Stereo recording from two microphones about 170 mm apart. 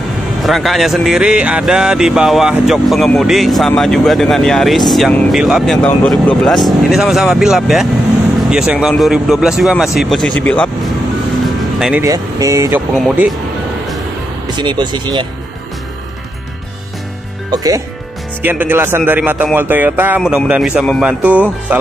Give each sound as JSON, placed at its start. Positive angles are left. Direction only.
{"t": 0.5, "sound": "speech", "side_deg": 0}
{"t": 12.0, "sound": "speech", "side_deg": -20}
{"t": 12.9, "sound": "speech", "side_deg": 0}
{"t": 14.6, "sound": "speech", "side_deg": -25}
{"t": 17.5, "sound": "speech", "side_deg": -20}